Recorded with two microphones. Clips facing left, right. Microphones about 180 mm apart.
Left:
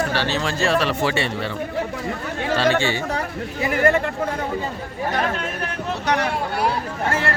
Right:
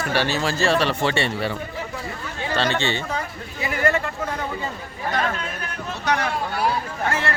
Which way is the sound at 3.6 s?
50° left (ahead or behind).